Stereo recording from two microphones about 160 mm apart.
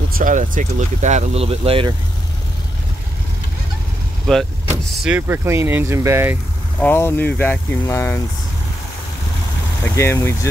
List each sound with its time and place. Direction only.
0.2 s speech: 50° right (ahead or behind); by 1.9 s 35° right (ahead or behind)
4.3 s speech: 5° left (ahead or behind)
4.6 s speech: 10° right (ahead or behind)
6.8 s speech: 15° left (ahead or behind)
9.9 s speech: 15° left (ahead or behind)